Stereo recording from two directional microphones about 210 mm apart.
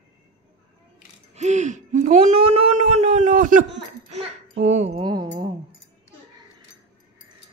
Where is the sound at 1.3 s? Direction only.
35° right (ahead or behind).